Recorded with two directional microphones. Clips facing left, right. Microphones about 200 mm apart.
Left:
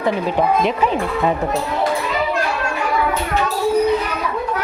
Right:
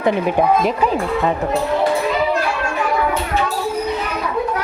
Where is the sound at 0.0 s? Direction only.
15° right (ahead or behind).